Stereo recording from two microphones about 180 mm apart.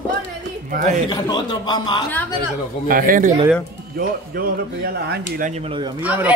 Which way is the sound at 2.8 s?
50° right (ahead or behind).